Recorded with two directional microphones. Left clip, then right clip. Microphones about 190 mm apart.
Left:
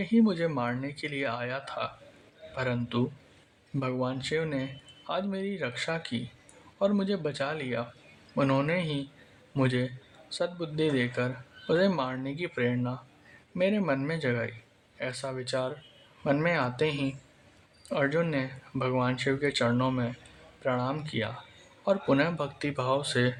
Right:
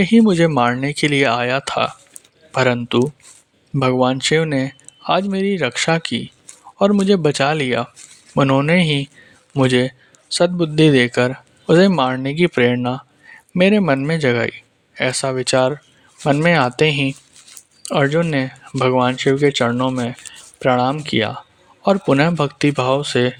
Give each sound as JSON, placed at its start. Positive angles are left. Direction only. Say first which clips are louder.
{"t": 0.0, "sound": "a man's voice", "louder": "right 13 dB", "side_deg": -45}